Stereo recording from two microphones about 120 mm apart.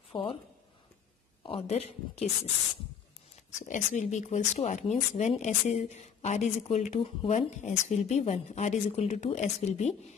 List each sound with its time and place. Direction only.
0.1 s a woman's voice: 50° left (ahead or behind)
1.7 s speech: 65° left (ahead or behind)
3.5 s speech: 90° left; by 9.9 s 70° left (ahead or behind)